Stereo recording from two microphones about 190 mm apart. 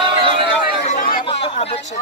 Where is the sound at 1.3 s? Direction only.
30° left (ahead or behind).